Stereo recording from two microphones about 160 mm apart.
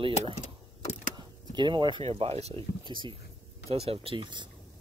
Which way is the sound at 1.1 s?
30° right (ahead or behind).